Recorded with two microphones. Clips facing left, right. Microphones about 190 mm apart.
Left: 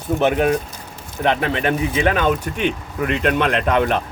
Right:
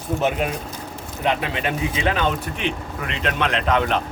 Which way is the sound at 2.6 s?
50° left (ahead or behind).